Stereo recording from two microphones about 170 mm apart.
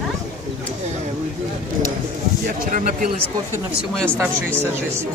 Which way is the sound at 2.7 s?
50° right (ahead or behind).